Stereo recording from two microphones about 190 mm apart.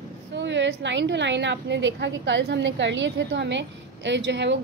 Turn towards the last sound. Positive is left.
turn(degrees=-70)  # may be behind; listen again after turning